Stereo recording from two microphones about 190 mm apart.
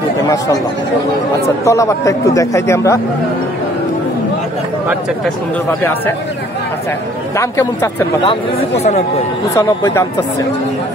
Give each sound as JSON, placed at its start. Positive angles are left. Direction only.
{"t": 1.6, "sound": "speech", "side_deg": 15}
{"t": 7.3, "sound": "speech", "side_deg": 15}
{"t": 8.2, "sound": "speech", "side_deg": 30}
{"t": 9.6, "sound": "speech", "side_deg": 15}